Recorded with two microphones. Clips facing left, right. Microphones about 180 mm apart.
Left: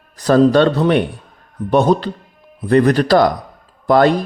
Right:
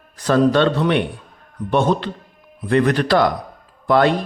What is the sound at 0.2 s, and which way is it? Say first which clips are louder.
A man's voice: left 4 dB; 40° left (ahead or behind).